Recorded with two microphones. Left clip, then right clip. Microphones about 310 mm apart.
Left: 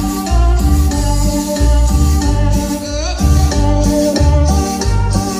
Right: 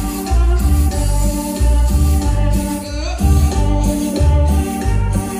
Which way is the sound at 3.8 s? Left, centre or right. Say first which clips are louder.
Left 9 dB; left.